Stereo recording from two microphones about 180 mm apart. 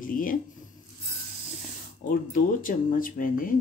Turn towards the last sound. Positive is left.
turn(degrees=50)  # may be behind; listen again after turning